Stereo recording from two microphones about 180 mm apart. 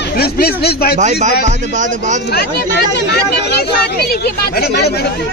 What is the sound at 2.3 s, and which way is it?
Speech, 65° left (ahead or behind).